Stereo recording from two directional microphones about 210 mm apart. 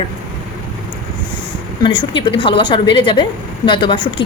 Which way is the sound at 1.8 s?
20° left (ahead or behind).